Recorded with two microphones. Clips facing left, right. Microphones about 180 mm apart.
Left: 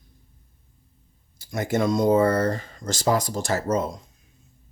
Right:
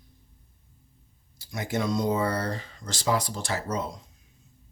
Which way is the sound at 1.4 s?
50° left (ahead or behind).